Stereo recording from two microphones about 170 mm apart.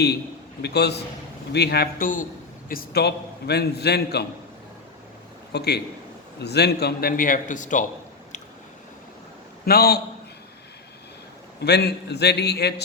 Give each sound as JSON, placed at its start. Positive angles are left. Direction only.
{"t": 0.6, "sound": "a man's voice", "side_deg": 75}
{"t": 2.6, "sound": "a man's voice", "side_deg": 65}
{"t": 5.5, "sound": "a man's voice", "side_deg": 75}
{"t": 9.6, "sound": "a man's voice", "side_deg": 65}
{"t": 11.6, "sound": "a man's voice", "side_deg": 75}